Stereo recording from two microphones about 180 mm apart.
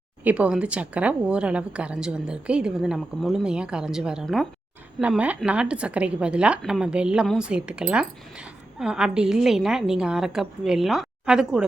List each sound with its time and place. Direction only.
0.3 s a woman's voice: 5° right (ahead or behind)